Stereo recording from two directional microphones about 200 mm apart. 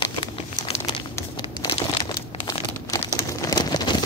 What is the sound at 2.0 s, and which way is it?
Crumpling, 25° left (ahead or behind).